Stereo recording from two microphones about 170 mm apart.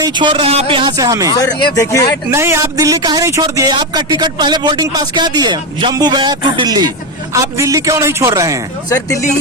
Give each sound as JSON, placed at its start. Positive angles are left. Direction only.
{"t": 0.0, "sound": "speech", "side_deg": -25}
{"t": 1.7, "sound": "speech", "side_deg": 20}
{"t": 2.3, "sound": "speech", "side_deg": -15}
{"t": 8.9, "sound": "speech", "side_deg": 20}